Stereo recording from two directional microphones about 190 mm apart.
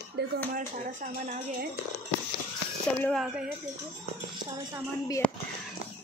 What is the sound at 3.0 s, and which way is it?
Speech, centre (ahead or behind).